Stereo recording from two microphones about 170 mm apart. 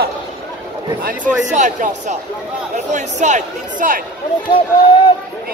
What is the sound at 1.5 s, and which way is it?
Speech, 45° right (ahead or behind).